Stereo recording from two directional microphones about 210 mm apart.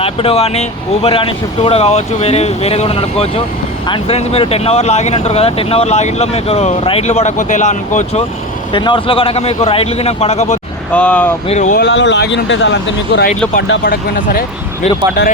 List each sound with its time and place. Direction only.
0.0 s speech: 25° left (ahead or behind)
8.7 s speech: 25° left (ahead or behind)
10.9 s speech: 5° left (ahead or behind)
11.4 s speech: 35° left (ahead or behind)
11.8 s speech: 60° left (ahead or behind)
13.8 s speech: 45° left (ahead or behind)